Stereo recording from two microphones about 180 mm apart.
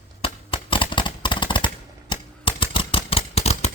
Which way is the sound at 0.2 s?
30° left (ahead or behind).